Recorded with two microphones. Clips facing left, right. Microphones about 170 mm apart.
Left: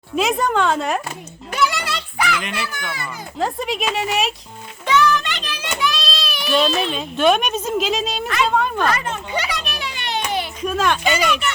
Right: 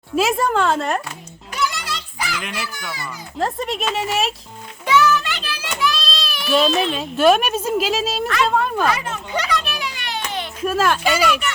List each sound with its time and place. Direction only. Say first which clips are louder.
0.2 s a child's voice: even; 5° right (ahead or behind)
1.5 s music: left 4 dB; 65° left (ahead or behind)
2.4 s a child's voice: left 2 dB; centre (ahead or behind)
9.6 s children playing: right 2 dB; 20° left (ahead or behind)
10.6 s a child's voice: right 3 dB; 5° right (ahead or behind)